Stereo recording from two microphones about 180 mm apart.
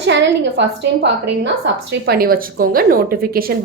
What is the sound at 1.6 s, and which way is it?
A woman's voice, 65° right (ahead or behind).